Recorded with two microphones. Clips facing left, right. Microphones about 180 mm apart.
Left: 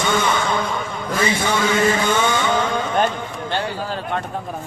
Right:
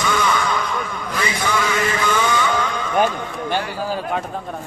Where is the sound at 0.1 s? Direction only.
25° left (ahead or behind).